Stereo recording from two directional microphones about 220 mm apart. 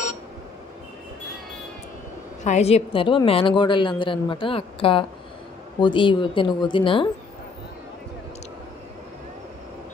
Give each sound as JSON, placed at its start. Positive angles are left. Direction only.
{"t": 2.4, "sound": "a woman's voice", "side_deg": 30}